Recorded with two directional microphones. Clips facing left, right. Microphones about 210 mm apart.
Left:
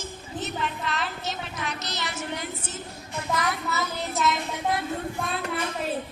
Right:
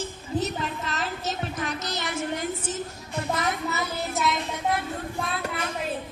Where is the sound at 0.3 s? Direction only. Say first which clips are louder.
Right 3 dB; 40° right (ahead or behind).